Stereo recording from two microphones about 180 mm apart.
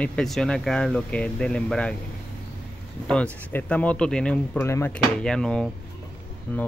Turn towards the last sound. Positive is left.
turn(degrees=10)  # may be behind; listen again after turning